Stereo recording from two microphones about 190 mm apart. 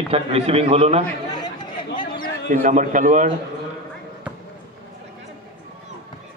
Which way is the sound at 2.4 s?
40° right (ahead or behind).